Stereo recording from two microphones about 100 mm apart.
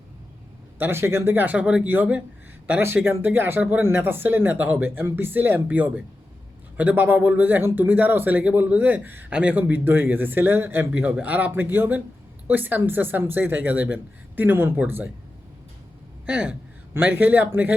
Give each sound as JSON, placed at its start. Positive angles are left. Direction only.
{"t": 0.8, "sound": "speech", "side_deg": -25}
{"t": 16.2, "sound": "speech", "side_deg": -10}